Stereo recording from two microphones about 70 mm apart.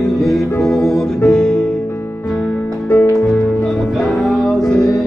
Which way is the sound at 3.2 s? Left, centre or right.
Centre.